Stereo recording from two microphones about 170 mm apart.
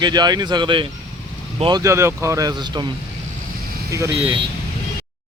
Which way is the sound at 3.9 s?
20° right (ahead or behind).